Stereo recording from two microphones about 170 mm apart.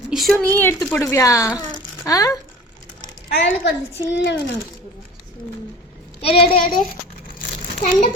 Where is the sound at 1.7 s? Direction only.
20° left (ahead or behind).